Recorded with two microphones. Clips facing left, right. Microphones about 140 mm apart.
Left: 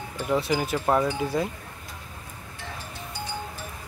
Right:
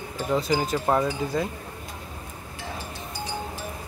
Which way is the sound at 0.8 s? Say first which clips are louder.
Left 1 dB; 5° right (ahead or behind).